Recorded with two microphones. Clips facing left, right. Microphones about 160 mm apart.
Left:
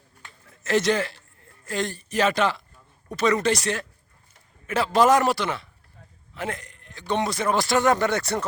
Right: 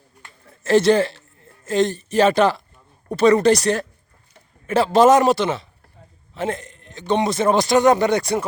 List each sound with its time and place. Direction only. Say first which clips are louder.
0.6 s a woman's voice: right 7 dB; 30° right (ahead or behind); by 8.4 s 15° right (ahead or behind)